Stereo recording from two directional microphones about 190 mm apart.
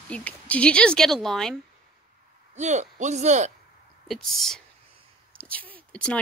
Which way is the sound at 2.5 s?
40° right (ahead or behind).